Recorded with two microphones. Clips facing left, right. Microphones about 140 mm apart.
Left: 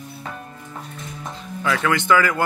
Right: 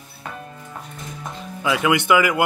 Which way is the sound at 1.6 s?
15° right (ahead or behind).